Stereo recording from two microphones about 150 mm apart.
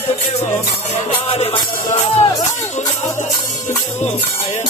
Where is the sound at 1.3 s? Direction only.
40° left (ahead or behind).